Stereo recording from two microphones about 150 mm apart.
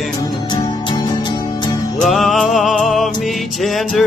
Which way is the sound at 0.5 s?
30° left (ahead or behind).